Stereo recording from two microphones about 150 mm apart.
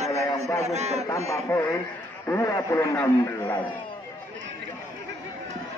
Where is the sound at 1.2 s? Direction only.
20° left (ahead or behind).